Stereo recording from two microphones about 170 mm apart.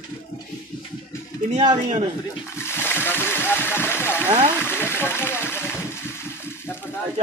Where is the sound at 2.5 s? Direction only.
15° left (ahead or behind).